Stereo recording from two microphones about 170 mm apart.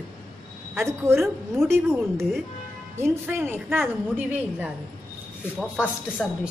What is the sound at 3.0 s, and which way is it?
Speech, 15° right (ahead or behind).